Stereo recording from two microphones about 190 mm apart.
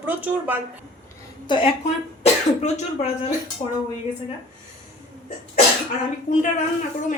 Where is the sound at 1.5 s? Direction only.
25° left (ahead or behind).